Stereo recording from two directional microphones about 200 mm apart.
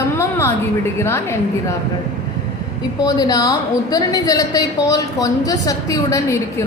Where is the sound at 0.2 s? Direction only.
15° left (ahead or behind).